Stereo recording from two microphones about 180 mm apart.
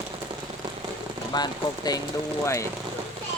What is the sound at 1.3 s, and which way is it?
Speech, 20° left (ahead or behind).